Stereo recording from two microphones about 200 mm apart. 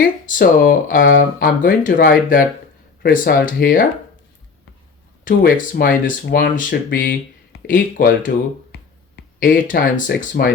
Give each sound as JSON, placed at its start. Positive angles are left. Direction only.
{"t": 0.3, "sound": "speech", "side_deg": 40}
{"t": 5.2, "sound": "speech", "side_deg": 50}